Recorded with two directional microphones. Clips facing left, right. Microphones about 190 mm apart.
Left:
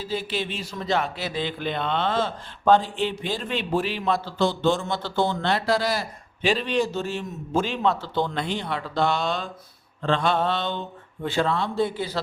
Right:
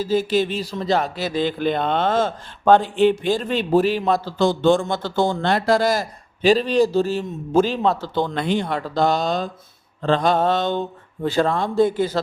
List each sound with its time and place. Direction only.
0.0 s speech: 40° right (ahead or behind)